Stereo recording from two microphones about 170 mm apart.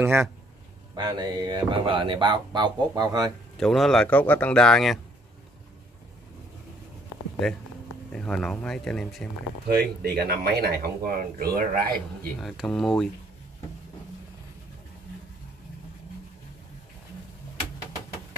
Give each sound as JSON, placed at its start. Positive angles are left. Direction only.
{"t": 0.0, "sound": "a man's voice", "side_deg": -15}
{"t": 0.9, "sound": "speech", "side_deg": -25}
{"t": 3.5, "sound": "a man's voice", "side_deg": 0}
{"t": 8.1, "sound": "a man's voice", "side_deg": 5}
{"t": 9.7, "sound": "speech", "side_deg": -70}
{"t": 12.4, "sound": "a man's voice", "side_deg": 0}